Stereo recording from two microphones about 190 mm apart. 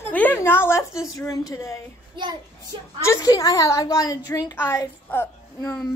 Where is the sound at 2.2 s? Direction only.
25° right (ahead or behind).